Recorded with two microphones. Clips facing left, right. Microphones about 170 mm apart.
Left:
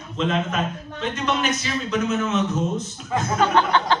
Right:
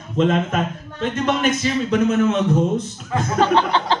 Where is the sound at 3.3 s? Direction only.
30° right (ahead or behind).